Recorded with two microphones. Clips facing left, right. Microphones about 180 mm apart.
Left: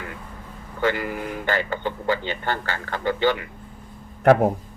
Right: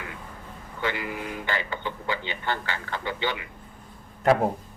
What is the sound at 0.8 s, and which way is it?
A man's voice, 45° left (ahead or behind).